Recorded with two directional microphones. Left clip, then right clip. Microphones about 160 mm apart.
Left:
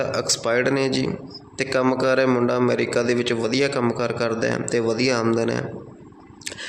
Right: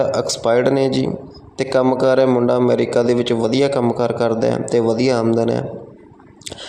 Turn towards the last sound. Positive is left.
turn(degrees=-25)  # may be behind; listen again after turning